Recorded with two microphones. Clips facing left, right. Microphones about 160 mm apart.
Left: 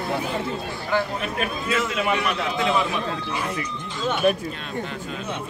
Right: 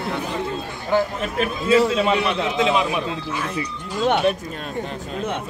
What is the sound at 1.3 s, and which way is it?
A man's voice, 30° right (ahead or behind).